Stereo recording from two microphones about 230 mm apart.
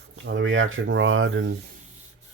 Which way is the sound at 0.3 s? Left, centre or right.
Right.